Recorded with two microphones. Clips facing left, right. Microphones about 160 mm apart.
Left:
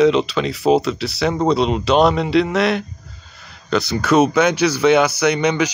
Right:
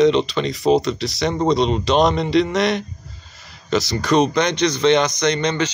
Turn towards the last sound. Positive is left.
turn(degrees=10)  # may be behind; listen again after turning